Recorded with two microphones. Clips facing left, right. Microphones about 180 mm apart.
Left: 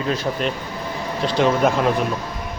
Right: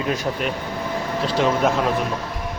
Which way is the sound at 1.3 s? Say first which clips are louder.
Left 2 dB; centre (ahead or behind).